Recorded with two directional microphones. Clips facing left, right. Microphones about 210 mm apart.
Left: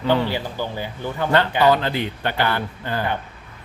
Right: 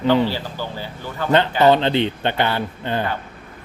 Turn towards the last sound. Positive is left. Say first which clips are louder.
# right 3 dB
turn(degrees=-20)  # may be behind; listen again after turning